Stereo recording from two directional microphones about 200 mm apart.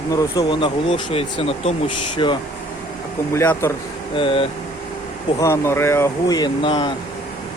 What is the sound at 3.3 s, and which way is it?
Speech, 15° left (ahead or behind).